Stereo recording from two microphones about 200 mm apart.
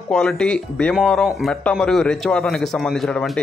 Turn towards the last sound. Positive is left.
turn(degrees=0)  # may be behind; listen again after turning